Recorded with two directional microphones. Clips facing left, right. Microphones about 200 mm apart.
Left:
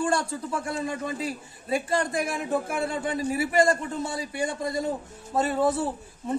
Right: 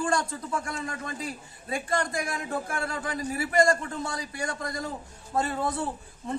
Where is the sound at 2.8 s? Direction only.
25° left (ahead or behind).